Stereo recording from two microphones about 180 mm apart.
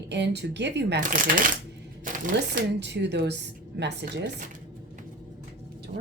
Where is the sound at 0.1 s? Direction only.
70° right (ahead or behind).